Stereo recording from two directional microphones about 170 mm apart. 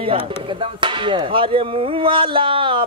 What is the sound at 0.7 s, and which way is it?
Music, 30° right (ahead or behind).